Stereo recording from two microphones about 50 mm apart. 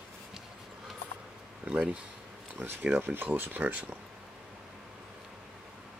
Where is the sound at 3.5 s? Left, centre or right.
Right.